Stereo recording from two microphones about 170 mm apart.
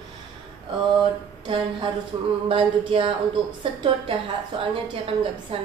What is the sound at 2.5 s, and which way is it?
A woman's voice, 30° right (ahead or behind).